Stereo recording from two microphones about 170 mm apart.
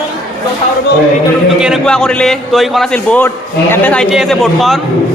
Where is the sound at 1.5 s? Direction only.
5° right (ahead or behind).